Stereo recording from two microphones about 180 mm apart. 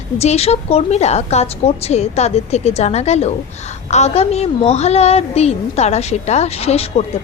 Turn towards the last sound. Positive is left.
turn(degrees=35)  # may be behind; listen again after turning